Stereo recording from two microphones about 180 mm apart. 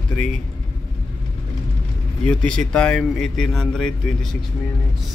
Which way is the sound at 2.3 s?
5° left (ahead or behind).